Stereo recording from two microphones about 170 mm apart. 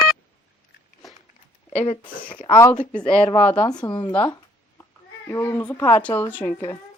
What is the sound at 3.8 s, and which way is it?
Speech, 25° left (ahead or behind).